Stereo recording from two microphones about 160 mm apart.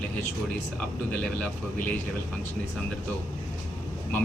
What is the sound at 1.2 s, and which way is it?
Speech, 10° left (ahead or behind).